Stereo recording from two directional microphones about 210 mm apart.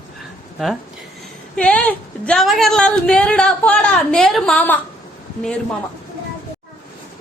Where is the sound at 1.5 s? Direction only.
5° left (ahead or behind).